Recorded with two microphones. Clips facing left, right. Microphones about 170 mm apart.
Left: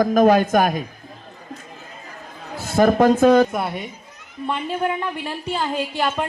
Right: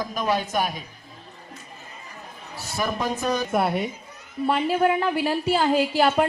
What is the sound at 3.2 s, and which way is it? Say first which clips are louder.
Speech: left 12 dB; 90° left.